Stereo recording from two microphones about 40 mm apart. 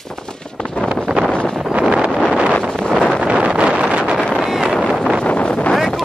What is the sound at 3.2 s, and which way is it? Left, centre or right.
Vehicle, right.